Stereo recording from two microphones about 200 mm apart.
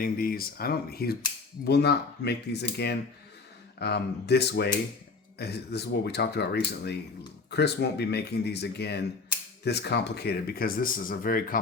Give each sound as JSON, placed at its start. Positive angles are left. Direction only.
{"t": 0.0, "sound": "speech", "side_deg": 45}